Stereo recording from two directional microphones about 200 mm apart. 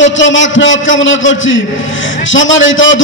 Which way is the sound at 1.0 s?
70° left (ahead or behind).